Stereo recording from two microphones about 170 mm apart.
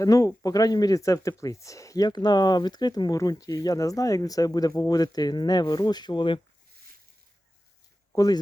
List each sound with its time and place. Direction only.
0.0 s speech: 20° left (ahead or behind)
8.1 s speech: 20° left (ahead or behind)